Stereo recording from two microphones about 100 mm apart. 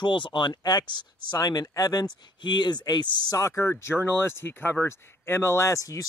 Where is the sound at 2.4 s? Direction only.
50° left (ahead or behind).